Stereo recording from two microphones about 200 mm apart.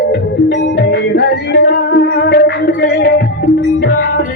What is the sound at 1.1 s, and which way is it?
Music, 55° left (ahead or behind).